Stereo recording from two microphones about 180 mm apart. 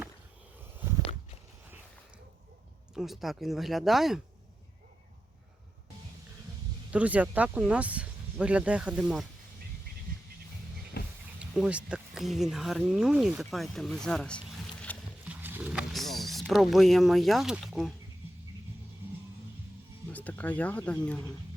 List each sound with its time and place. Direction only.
2.9 s speech: centre (ahead or behind)
6.9 s speech: 10° right (ahead or behind)
11.0 s a sound: 60° left (ahead or behind)
11.3 s a sound: 5° right (ahead or behind)
11.9 s speech: 5° right (ahead or behind)
15.2 s wild animals: 10° right (ahead or behind)
20.1 s speech: 10° left (ahead or behind)